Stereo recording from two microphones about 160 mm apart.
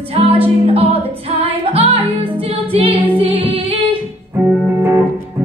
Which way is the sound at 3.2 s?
35° right (ahead or behind).